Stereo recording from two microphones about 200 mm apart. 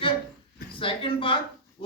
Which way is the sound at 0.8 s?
25° left (ahead or behind).